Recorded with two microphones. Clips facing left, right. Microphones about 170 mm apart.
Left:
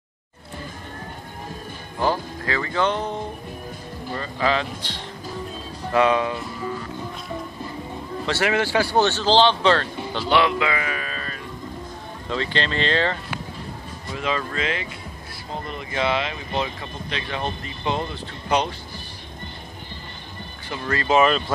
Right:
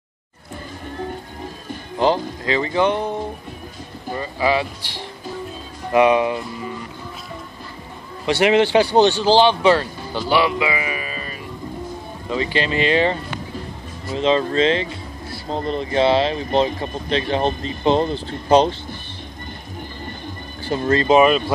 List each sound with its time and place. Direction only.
2.0 s speech: 20° right (ahead or behind)
4.1 s speech: 10° right (ahead or behind)
8.3 s speech: 20° right (ahead or behind)
14.1 s speech: 25° right (ahead or behind)
20.6 s speech: 25° right (ahead or behind)